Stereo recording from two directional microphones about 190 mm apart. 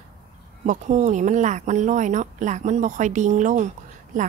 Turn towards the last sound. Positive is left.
turn(degrees=-45)  # may be behind; listen again after turning